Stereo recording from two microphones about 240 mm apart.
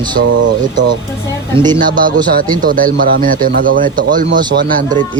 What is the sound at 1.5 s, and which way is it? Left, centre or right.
Speech, centre.